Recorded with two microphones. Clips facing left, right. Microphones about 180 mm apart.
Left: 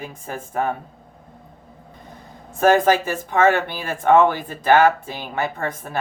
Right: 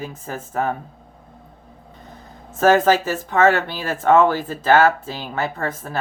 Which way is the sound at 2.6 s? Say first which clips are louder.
Right 1 dB; 15° left (ahead or behind).